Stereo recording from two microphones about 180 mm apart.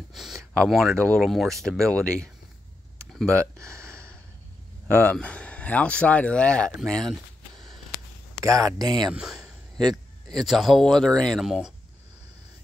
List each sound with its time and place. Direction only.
0.1 s speech: centre (ahead or behind)
3.5 s speech: 15° right (ahead or behind)
3.8 s a sound: 5° left (ahead or behind)
4.8 s speech: 10° left (ahead or behind)
8.4 s speech: 20° right (ahead or behind)
9.1 s speech: 5° right (ahead or behind)